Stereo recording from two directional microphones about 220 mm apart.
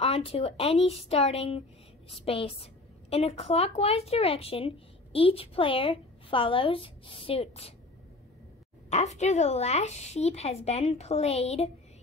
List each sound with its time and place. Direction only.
0.0 s a woman's voice: 25° left (ahead or behind)
8.9 s a woman's voice: 30° left (ahead or behind)